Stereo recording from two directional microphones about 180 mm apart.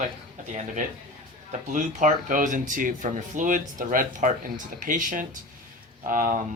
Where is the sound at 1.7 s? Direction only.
45° right (ahead or behind).